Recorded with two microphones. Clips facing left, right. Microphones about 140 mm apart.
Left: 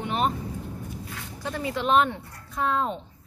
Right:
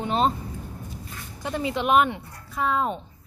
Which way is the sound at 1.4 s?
20° right (ahead or behind).